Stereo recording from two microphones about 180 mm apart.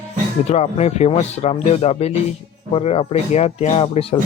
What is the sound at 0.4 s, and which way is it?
Speech, 35° left (ahead or behind).